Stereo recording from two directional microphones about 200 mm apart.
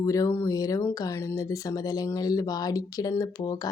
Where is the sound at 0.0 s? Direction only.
15° left (ahead or behind).